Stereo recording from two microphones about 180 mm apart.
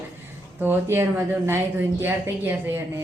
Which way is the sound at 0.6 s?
10° right (ahead or behind).